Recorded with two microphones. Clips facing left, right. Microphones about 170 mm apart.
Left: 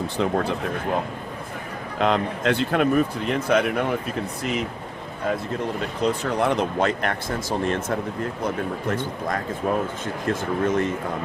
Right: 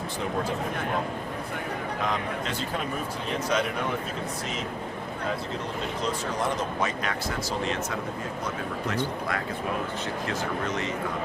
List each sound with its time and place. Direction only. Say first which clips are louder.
0.2 s speech: left 6 dB; 70° left (ahead or behind)
2.0 s speech: left 10 dB; 70° left (ahead or behind)
6.0 s speech: left 8 dB; 65° left (ahead or behind)